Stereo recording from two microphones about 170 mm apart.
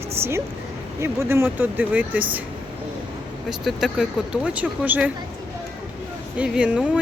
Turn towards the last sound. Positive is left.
turn(degrees=-5)  # may be behind; listen again after turning